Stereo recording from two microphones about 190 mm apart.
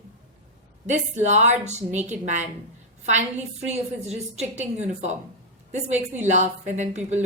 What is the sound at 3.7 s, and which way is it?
Speech, 35° right (ahead or behind).